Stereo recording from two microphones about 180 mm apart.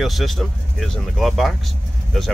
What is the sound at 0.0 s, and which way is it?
Speech, centre (ahead or behind).